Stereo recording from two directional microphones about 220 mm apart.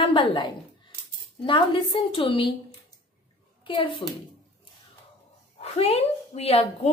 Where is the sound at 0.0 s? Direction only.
25° left (ahead or behind).